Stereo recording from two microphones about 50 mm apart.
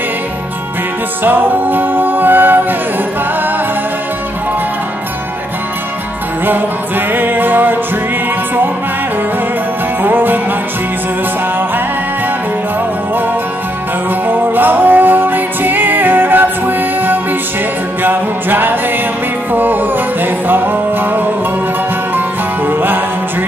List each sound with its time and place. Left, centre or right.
1.2 s music: right
7.1 s music: right
10.0 s music: right
14.2 s music: right
22.7 s music: right